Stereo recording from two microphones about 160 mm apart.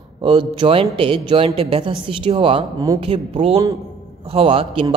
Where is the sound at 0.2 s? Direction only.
30° right (ahead or behind).